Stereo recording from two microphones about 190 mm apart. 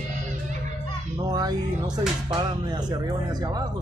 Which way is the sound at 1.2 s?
20° right (ahead or behind).